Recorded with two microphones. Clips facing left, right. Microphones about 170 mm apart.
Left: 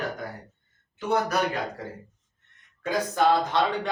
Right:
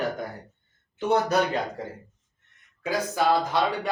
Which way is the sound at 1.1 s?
25° right (ahead or behind).